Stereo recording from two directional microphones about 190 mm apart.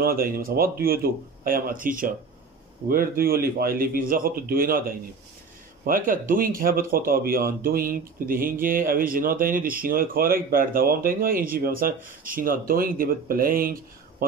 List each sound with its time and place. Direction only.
0.0 s speech: 50° right (ahead or behind)